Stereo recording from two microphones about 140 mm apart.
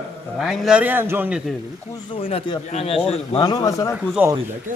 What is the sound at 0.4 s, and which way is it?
Speech, 5° right (ahead or behind).